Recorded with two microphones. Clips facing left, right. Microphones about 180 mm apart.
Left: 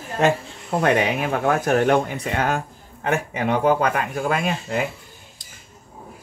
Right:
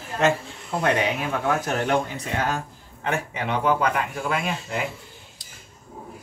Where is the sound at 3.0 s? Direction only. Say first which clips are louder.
Left 4 dB; 50° left (ahead or behind).